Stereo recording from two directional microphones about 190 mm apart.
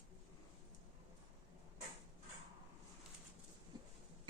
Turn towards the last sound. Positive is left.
turn(degrees=-20)  # may be behind; listen again after turning